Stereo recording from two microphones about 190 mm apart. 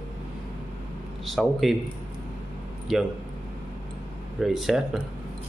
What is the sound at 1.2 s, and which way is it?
Speech, centre (ahead or behind).